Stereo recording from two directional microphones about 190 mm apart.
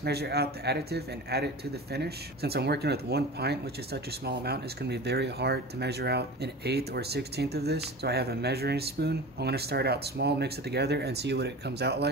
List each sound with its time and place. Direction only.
0.0 s speech: 60° right (ahead or behind)